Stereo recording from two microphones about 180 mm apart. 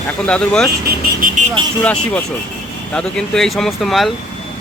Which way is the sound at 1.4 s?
45° right (ahead or behind).